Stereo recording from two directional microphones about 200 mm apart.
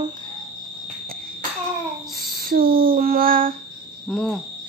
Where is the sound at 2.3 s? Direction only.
45° right (ahead or behind).